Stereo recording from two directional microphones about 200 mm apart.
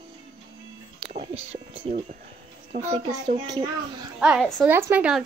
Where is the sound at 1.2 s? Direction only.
30° right (ahead or behind).